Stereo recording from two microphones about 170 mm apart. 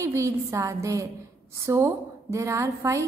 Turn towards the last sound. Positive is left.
turn(degrees=-15)  # may be behind; listen again after turning